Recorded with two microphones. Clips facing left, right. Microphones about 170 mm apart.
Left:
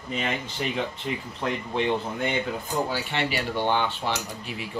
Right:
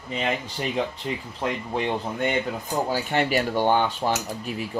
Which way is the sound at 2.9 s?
45° right (ahead or behind).